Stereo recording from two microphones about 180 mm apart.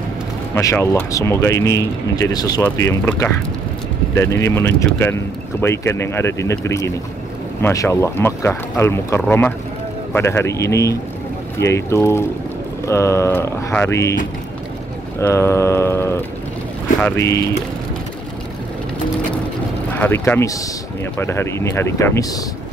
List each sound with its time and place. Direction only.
0.6 s speech: 15° left (ahead or behind)
15.1 s speech: 15° left (ahead or behind)
19.9 s speech: 10° left (ahead or behind)